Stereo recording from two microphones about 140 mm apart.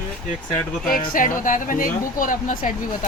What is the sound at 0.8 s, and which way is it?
Speech, 90° left.